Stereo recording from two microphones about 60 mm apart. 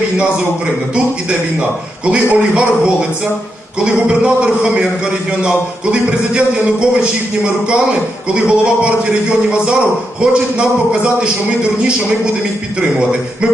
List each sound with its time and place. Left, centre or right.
2.0 s a man's voice: centre